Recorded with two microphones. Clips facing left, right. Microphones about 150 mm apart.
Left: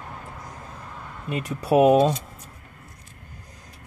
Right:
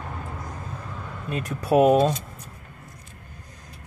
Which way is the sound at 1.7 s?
15° left (ahead or behind).